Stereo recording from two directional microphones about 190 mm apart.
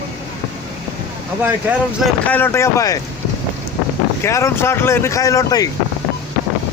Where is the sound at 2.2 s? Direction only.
10° left (ahead or behind).